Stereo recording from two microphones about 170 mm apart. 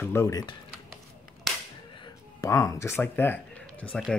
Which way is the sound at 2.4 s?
20° left (ahead or behind).